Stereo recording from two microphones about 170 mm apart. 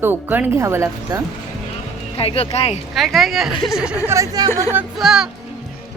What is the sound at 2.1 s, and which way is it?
Speech, 35° left (ahead or behind).